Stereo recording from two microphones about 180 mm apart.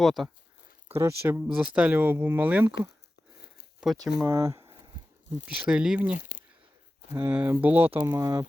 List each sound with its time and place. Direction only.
0.0 s speech: centre (ahead or behind)
0.9 s speech: 15° right (ahead or behind)
3.8 s speech: 5° right (ahead or behind)
4.3 s speech: 15° right (ahead or behind)
5.6 s speech: 5° right (ahead or behind)
6.1 s speech: 50° left (ahead or behind)
7.1 s speech: 10° right (ahead or behind)
7.9 s speech: 20° right (ahead or behind)